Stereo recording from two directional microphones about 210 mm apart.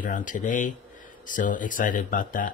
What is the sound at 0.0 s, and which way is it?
Speech, 40° left (ahead or behind).